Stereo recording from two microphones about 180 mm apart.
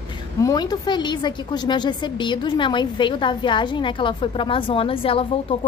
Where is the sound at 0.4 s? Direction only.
20° left (ahead or behind).